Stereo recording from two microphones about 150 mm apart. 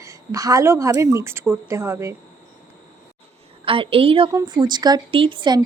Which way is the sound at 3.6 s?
35° right (ahead or behind).